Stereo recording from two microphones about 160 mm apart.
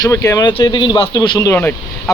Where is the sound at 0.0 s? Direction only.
20° left (ahead or behind).